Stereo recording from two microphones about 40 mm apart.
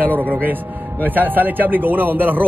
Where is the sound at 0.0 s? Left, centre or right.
Right.